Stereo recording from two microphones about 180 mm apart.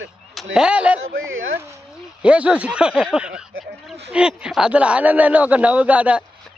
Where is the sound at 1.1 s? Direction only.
90° right.